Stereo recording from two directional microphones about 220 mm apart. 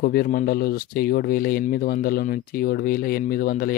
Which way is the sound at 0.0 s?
45° left (ahead or behind).